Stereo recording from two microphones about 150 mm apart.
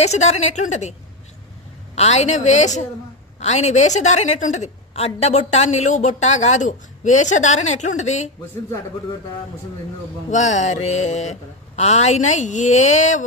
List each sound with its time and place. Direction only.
0.0 s a woman's voice: 45° left (ahead or behind)
2.0 s a woman's voice: 45° left (ahead or behind)
10.3 s a woman's voice: 50° left (ahead or behind)